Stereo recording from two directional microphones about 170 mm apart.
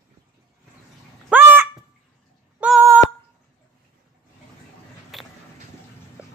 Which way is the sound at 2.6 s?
5° right (ahead or behind).